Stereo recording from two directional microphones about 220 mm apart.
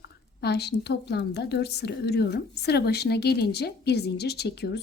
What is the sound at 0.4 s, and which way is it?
Speech, 50° left (ahead or behind).